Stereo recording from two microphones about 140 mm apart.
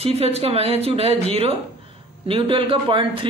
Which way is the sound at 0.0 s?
45° right (ahead or behind).